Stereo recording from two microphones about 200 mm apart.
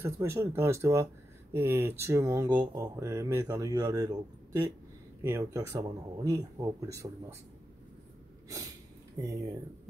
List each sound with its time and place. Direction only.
0.0 s speech: 15° right (ahead or behind)
9.2 s speech: 15° right (ahead or behind)